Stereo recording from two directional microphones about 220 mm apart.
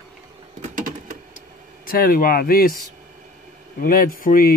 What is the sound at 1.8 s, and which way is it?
Speech, 40° left (ahead or behind).